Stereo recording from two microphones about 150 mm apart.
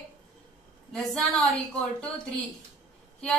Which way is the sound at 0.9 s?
Centre (ahead or behind).